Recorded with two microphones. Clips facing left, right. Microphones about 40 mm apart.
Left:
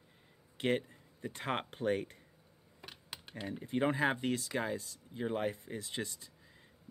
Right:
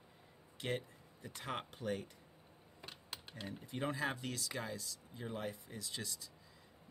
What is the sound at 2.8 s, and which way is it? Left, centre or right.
Computer keyboard, centre.